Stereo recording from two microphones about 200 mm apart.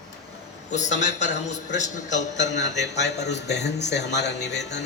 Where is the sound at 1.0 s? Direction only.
35° left (ahead or behind).